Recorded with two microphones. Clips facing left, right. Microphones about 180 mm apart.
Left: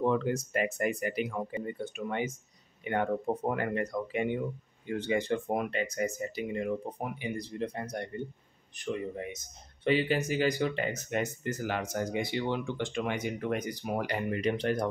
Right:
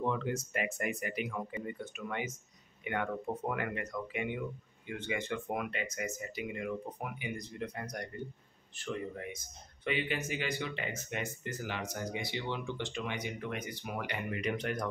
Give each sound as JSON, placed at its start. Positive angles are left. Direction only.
{"t": 0.1, "sound": "speech", "side_deg": 40}
{"t": 9.9, "sound": "speech", "side_deg": 35}